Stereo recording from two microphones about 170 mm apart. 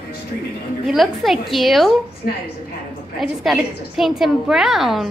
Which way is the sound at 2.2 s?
60° left (ahead or behind).